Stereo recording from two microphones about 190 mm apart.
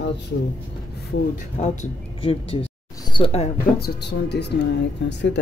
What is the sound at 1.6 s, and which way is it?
Speech, 35° left (ahead or behind).